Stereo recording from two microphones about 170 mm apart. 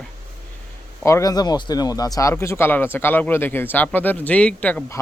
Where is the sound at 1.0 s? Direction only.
20° left (ahead or behind).